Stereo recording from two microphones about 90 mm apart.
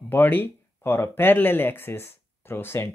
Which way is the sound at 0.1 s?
25° left (ahead or behind).